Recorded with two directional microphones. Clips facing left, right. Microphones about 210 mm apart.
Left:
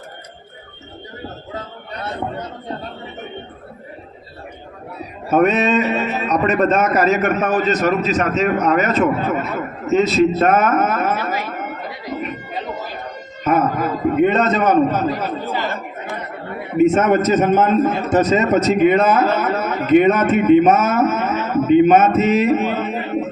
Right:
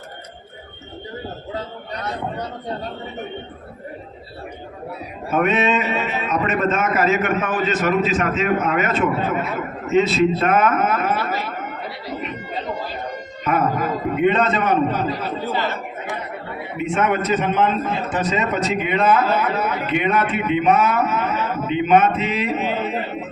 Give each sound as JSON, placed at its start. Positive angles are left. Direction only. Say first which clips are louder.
{"t": 5.3, "sound": "speech", "louder": "left 4 dB", "side_deg": 40}
{"t": 13.4, "sound": "a man's voice", "louder": "left 3 dB", "side_deg": 45}
{"t": 16.7, "sound": "a man's voice", "louder": "left 7 dB", "side_deg": 45}